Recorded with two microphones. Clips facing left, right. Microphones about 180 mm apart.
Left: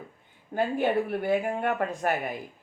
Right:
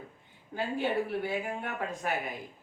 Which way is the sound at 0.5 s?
50° left (ahead or behind).